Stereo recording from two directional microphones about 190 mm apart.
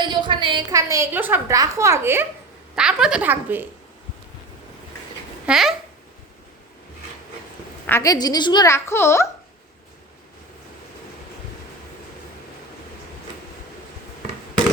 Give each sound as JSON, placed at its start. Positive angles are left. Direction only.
{"t": 0.0, "sound": "a woman's voice", "side_deg": -25}
{"t": 5.5, "sound": "a child's voice", "side_deg": 0}
{"t": 7.9, "sound": "a child's voice", "side_deg": 15}